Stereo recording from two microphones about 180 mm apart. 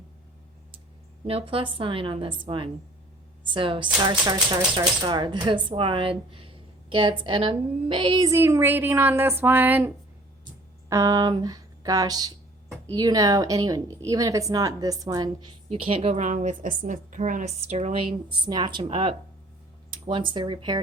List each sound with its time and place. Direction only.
1.3 s a woman's voice: 30° right (ahead or behind)